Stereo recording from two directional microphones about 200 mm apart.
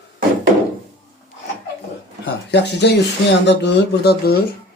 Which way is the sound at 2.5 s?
55° left (ahead or behind).